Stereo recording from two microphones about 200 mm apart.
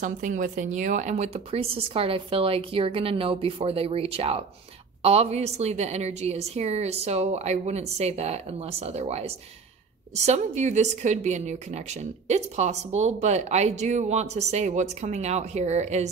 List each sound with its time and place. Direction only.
0.0 s speech: 40° right (ahead or behind)